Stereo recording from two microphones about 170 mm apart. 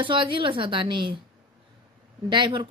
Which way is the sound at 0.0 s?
30° right (ahead or behind).